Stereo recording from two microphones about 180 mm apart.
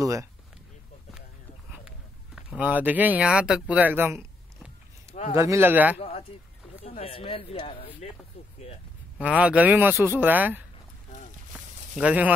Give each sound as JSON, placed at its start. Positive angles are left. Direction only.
{"t": 0.0, "sound": "speech", "side_deg": -15}
{"t": 1.7, "sound": "speech", "side_deg": -5}
{"t": 5.3, "sound": "speech", "side_deg": -15}
{"t": 5.9, "sound": "speech", "side_deg": 35}
{"t": 9.2, "sound": "speech", "side_deg": -5}
{"t": 11.5, "sound": "a sound", "side_deg": -5}